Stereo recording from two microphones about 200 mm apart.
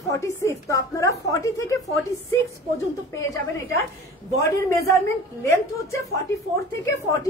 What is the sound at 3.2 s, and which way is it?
Speech, 15° left (ahead or behind).